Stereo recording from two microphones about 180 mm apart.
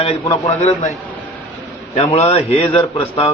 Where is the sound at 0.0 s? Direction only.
35° left (ahead or behind).